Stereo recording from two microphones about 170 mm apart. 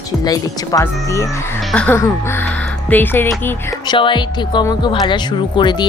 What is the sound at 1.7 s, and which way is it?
Music, 10° left (ahead or behind).